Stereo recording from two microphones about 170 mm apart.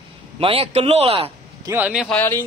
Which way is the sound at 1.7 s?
10° right (ahead or behind).